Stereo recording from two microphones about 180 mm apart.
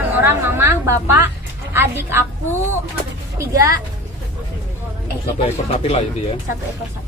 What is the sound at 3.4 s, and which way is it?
Speech, 15° right (ahead or behind).